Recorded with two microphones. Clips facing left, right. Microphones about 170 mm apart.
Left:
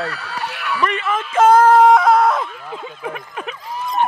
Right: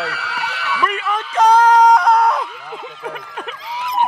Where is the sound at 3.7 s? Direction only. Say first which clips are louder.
Right 1 dB; 90° right.